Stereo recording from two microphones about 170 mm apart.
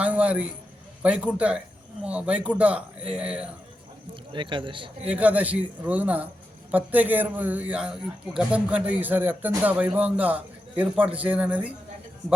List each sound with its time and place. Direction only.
0.0 s a man's voice: 5° right (ahead or behind)
4.1 s speech: 30° right (ahead or behind)
5.0 s a man's voice: 10° right (ahead or behind)